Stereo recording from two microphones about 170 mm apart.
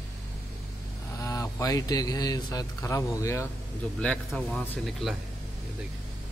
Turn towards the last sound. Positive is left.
turn(degrees=0)  # may be behind; listen again after turning